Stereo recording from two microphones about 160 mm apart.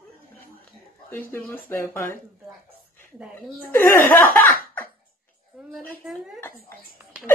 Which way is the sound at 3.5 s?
15° left (ahead or behind).